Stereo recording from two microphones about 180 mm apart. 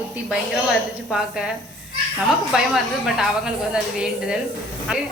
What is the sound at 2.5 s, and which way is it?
A woman's voice, centre (ahead or behind).